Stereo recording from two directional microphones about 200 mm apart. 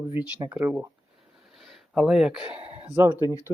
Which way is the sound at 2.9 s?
10° right (ahead or behind).